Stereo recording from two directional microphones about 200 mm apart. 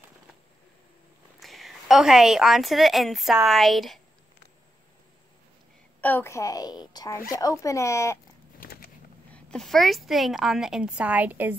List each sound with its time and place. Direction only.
1.4 s a woman's voice: centre (ahead or behind)
5.9 s a woman's voice: 10° left (ahead or behind)
8.5 s a sound: 45° left (ahead or behind)
9.3 s a woman's voice: 5° left (ahead or behind)